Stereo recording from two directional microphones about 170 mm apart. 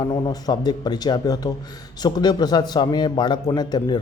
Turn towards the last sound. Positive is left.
turn(degrees=25)  # may be behind; listen again after turning